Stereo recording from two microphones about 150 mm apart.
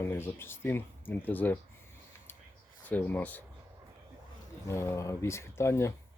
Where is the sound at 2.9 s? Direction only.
10° left (ahead or behind).